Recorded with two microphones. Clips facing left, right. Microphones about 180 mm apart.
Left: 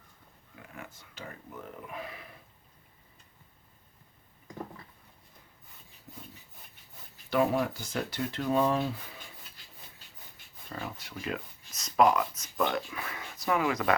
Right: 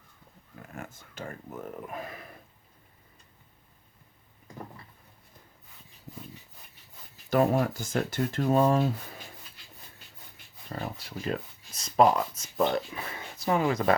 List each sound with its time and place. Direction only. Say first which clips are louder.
0.7 s a sound: right 4 dB; 45° right (ahead or behind)
1.9 s speech: right 3 dB; 45° right (ahead or behind)
7.3 s speech: right 3 dB; 45° right (ahead or behind)
10.7 s speech: right 3 dB; 40° right (ahead or behind)